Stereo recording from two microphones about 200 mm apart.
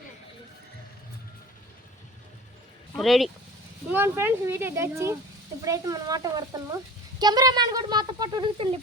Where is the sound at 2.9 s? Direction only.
Centre (ahead or behind).